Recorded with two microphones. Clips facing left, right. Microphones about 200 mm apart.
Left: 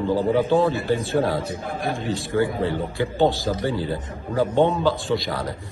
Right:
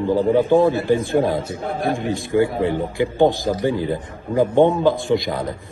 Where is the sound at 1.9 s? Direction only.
15° right (ahead or behind).